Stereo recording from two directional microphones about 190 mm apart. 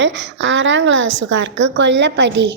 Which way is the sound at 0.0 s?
70° right (ahead or behind).